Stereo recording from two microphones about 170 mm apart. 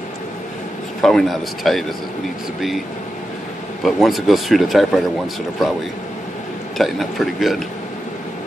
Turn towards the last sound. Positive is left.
turn(degrees=0)  # may be behind; listen again after turning